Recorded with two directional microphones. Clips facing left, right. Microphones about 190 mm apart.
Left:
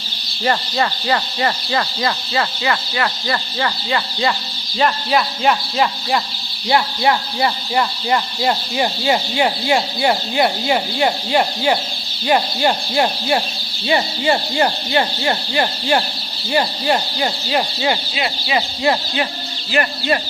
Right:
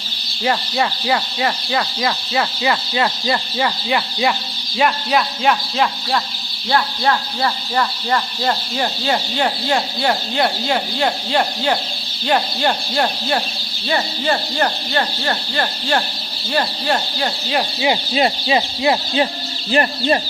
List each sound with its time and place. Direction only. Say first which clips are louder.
0.4 s speech: even; 5° right (ahead or behind)
4.8 s speech: even; centre (ahead or behind)
6.7 s speech: left 2 dB; 15° left (ahead or behind)
18.1 s speech: right 6 dB; 40° right (ahead or behind)
18.5 s speech: left 3 dB; 20° right (ahead or behind)
19.7 s speech: right 2 dB; 35° right (ahead or behind)